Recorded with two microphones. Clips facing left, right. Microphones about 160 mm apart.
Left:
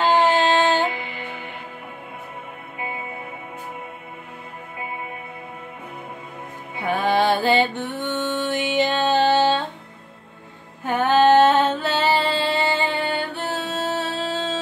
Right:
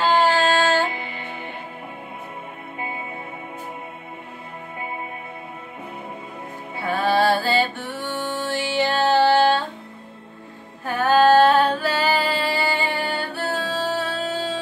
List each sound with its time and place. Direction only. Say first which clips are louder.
0.0 s music: left 1 dB; 20° left (ahead or behind)
6.8 s music: even; 20° left (ahead or behind)
10.8 s female singing: even; 20° left (ahead or behind)